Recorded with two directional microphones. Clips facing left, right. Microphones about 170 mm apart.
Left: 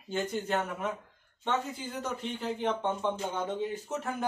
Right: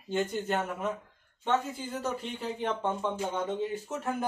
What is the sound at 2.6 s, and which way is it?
Speech, 5° right (ahead or behind).